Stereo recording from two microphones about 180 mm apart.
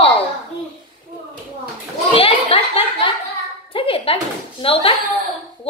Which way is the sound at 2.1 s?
30° left (ahead or behind).